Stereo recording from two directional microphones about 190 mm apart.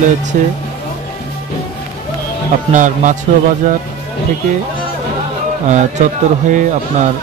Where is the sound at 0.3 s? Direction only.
40° right (ahead or behind).